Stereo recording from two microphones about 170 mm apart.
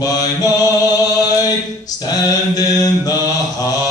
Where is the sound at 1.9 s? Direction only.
20° left (ahead or behind).